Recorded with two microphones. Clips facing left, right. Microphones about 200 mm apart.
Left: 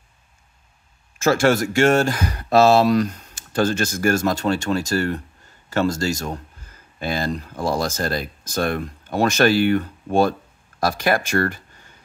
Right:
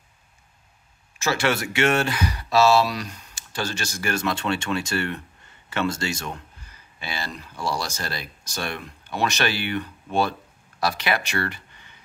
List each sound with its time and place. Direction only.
1.1 s speech: 50° left (ahead or behind)